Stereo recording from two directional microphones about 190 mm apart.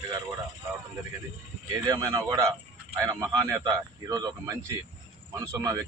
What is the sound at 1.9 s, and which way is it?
Speech, 15° right (ahead or behind).